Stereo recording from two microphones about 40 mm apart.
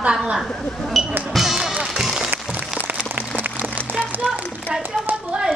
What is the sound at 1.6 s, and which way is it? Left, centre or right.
Music, right.